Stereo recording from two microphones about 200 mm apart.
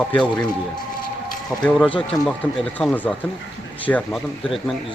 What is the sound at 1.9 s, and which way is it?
Speech, 25° left (ahead or behind).